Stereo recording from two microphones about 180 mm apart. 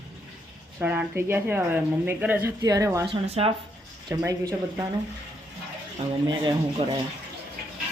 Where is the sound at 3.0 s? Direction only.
30° right (ahead or behind).